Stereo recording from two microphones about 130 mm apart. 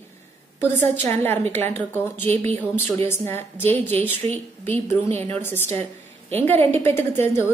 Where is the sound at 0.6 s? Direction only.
15° left (ahead or behind).